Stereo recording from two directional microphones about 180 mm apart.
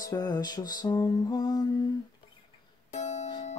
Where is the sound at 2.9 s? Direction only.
40° left (ahead or behind).